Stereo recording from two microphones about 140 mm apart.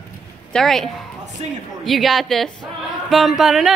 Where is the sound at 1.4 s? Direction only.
50° right (ahead or behind).